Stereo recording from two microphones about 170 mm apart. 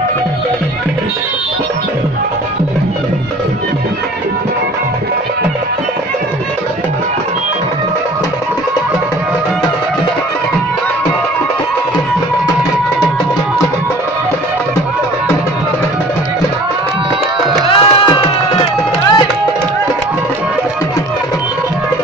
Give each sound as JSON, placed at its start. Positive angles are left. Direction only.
{"t": 17.6, "sound": "music", "side_deg": 30}